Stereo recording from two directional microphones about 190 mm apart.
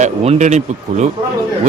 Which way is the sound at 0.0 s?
35° right (ahead or behind).